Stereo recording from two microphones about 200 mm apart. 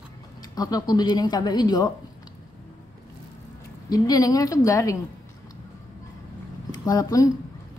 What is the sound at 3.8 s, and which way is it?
A woman's voice, 20° left (ahead or behind).